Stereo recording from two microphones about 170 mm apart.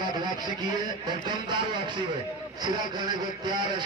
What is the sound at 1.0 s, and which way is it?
Speech, 25° right (ahead or behind).